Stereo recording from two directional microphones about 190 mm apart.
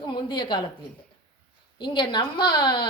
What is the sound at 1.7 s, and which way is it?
A woman's voice, 25° left (ahead or behind).